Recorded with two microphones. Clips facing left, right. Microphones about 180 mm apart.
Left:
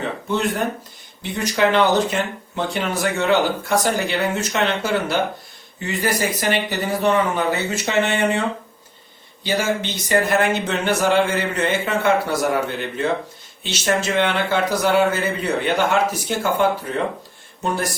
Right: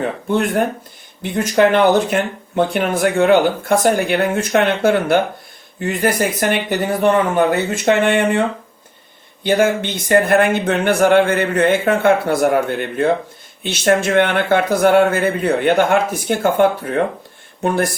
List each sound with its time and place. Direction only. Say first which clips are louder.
0.3 s a man's voice: right 4 dB; 55° right (ahead or behind)